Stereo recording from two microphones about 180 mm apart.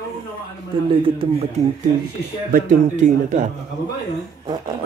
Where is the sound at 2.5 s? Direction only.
45° right (ahead or behind).